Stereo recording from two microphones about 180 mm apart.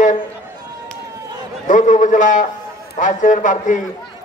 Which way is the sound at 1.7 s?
45° left (ahead or behind).